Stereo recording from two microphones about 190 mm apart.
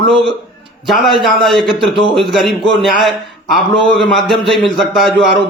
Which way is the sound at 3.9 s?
Centre (ahead or behind).